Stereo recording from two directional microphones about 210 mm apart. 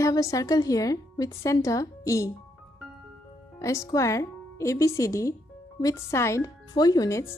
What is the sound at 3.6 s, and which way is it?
Speech, 15° left (ahead or behind).